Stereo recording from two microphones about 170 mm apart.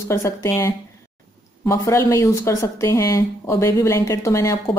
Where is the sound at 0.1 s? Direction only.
15° left (ahead or behind).